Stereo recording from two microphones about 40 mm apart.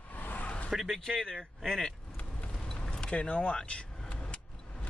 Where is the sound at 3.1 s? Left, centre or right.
Left.